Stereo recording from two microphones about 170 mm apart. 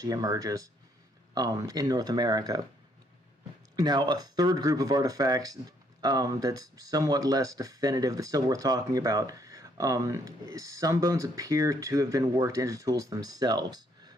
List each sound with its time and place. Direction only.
0.0 s speech: 20° right (ahead or behind)
3.7 s speech: 25° right (ahead or behind)